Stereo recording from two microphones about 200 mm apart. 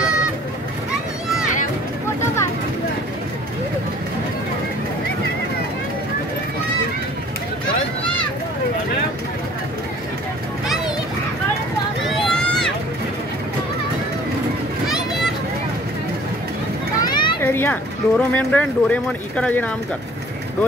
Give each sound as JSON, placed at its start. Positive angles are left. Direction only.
{"t": 12.3, "sound": "run", "side_deg": 0}
{"t": 17.0, "sound": "children playing", "side_deg": 20}
{"t": 17.4, "sound": "speech", "side_deg": 10}